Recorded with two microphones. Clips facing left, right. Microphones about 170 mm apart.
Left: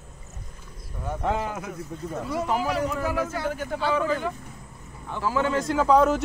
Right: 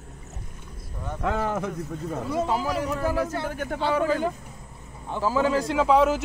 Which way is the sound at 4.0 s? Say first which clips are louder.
Right 2 dB; 35° right (ahead or behind).